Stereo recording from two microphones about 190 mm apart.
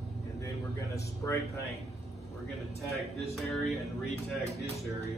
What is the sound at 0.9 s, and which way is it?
Speech, 15° left (ahead or behind).